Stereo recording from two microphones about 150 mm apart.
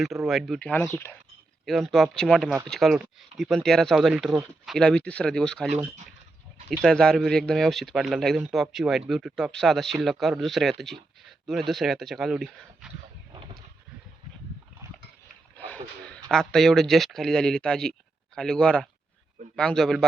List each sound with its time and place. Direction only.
0.0 s speech: centre (ahead or behind)
0.7 s speech: 15° left (ahead or behind)
1.6 s speech: centre (ahead or behind)
6.8 s speech: 5° left (ahead or behind)
15.5 s speech: 10° left (ahead or behind)